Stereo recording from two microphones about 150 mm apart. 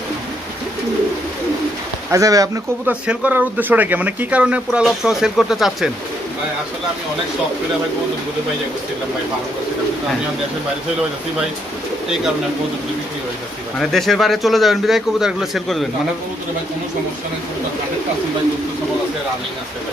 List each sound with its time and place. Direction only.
2.0 s speech: 20° right (ahead or behind)
2.9 s speech: 10° right (ahead or behind)
13.7 s speech: centre (ahead or behind)